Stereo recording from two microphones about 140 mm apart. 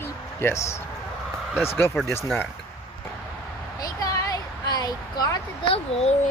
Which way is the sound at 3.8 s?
25° left (ahead or behind).